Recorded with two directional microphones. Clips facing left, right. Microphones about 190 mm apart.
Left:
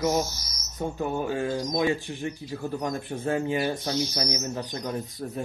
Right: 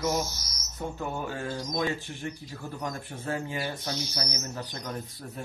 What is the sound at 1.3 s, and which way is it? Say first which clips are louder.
Speech: left 6 dB; 15° left (ahead or behind).